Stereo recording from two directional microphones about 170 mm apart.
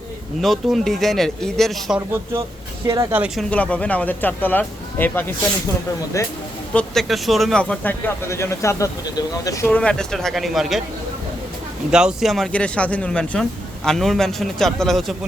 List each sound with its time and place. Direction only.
0.4 s speech: centre (ahead or behind)
2.0 s speech: 15° right (ahead or behind)
3.5 s speech: 5° left (ahead or behind)
6.7 s speech: centre (ahead or behind); by 9.6 s 20° left (ahead or behind)
9.6 s speech: 5° left (ahead or behind)
11.9 s speech: 5° right (ahead or behind)